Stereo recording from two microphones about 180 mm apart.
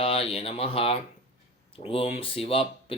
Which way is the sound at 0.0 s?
30° left (ahead or behind).